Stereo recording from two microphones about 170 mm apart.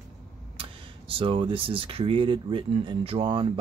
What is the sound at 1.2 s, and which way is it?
Speech, 30° right (ahead or behind).